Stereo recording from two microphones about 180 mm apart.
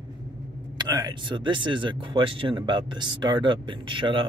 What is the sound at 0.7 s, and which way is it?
Speech, 25° right (ahead or behind).